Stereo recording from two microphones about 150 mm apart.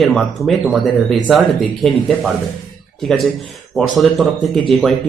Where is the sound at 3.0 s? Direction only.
Centre (ahead or behind).